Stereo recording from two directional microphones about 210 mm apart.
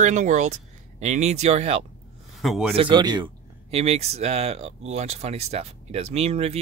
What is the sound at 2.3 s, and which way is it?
Speech, centre (ahead or behind).